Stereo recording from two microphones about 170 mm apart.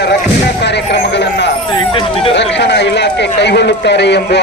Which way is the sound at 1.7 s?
30° left (ahead or behind).